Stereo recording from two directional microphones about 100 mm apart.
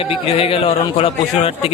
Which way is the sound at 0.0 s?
70° left (ahead or behind).